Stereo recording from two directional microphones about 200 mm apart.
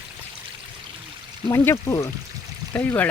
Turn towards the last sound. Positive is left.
turn(degrees=10)  # may be behind; listen again after turning